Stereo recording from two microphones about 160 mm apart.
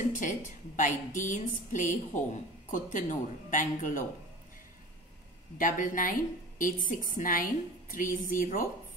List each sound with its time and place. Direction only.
0.1 s a woman's voice: 55° left (ahead or behind)
5.6 s a woman's voice: 55° left (ahead or behind)